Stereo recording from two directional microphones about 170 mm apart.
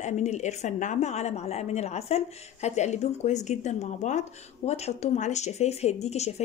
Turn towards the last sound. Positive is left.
turn(degrees=40)  # may be behind; listen again after turning